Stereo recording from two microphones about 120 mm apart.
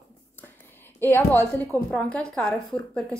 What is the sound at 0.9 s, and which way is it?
Speech, 20° left (ahead or behind).